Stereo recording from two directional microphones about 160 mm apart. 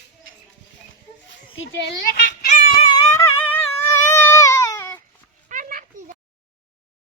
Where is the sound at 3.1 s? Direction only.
15° left (ahead or behind).